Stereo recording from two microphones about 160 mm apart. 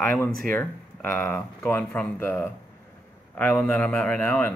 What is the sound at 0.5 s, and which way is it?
Speech, 15° left (ahead or behind).